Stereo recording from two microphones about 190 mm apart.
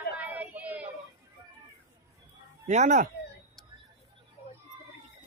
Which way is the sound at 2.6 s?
35° right (ahead or behind).